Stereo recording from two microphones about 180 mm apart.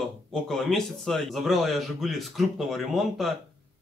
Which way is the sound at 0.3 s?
Centre (ahead or behind).